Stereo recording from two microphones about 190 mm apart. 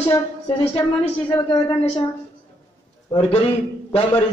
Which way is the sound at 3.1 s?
30° left (ahead or behind).